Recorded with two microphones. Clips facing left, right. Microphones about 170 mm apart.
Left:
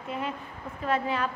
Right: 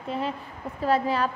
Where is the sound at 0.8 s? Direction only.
35° right (ahead or behind).